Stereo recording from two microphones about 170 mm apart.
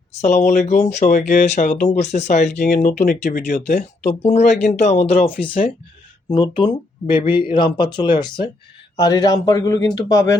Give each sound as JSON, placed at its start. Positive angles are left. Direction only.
{"t": 0.2, "sound": "speech", "side_deg": 45}
{"t": 6.3, "sound": "a man's voice", "side_deg": 30}